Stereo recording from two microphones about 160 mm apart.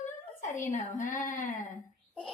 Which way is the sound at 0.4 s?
50° left (ahead or behind).